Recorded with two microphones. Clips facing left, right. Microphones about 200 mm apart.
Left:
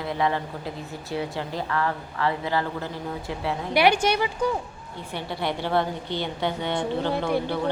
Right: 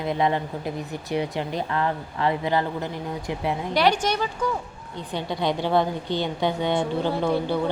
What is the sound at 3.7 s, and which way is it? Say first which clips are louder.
Speech: left 2 dB; 10° left (ahead or behind).